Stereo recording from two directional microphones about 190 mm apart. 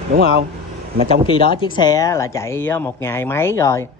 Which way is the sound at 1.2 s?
25° left (ahead or behind).